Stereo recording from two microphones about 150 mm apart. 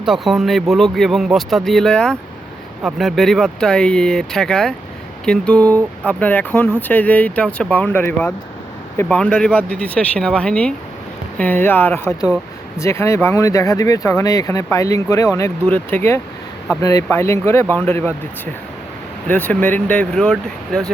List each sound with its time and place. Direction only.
0.0 s speech: centre (ahead or behind); by 15.5 s 20° left (ahead or behind)
15.6 s speech: 10° left (ahead or behind)
19.3 s speech: 10° left (ahead or behind)